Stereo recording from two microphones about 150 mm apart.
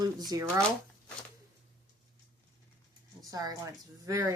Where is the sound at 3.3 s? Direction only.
20° right (ahead or behind).